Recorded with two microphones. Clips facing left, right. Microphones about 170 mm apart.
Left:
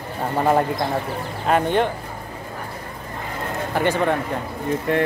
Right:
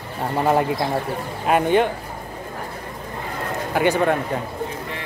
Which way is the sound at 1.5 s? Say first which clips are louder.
Right 2 dB; 5° right (ahead or behind).